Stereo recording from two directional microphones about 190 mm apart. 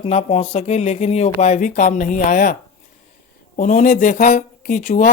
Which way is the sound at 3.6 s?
45° left (ahead or behind).